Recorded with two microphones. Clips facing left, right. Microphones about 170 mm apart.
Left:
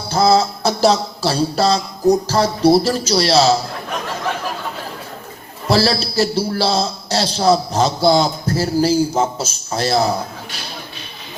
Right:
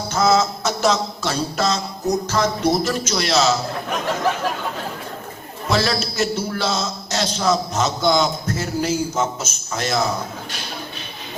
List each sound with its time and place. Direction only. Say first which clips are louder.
0.1 s a man's voice: left 3 dB; 35° left (ahead or behind)
5.6 s a man's voice: left 4 dB; 35° left (ahead or behind)